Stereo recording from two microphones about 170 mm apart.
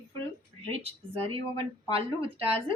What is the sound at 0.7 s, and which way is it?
A woman's voice, 35° right (ahead or behind).